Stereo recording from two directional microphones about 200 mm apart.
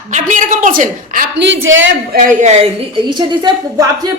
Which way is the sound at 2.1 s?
40° right (ahead or behind).